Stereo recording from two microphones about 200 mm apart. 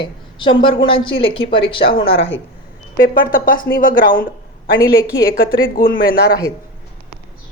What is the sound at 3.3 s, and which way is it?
Speech, 45° left (ahead or behind).